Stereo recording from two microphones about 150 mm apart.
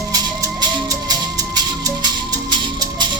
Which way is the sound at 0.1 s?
25° right (ahead or behind).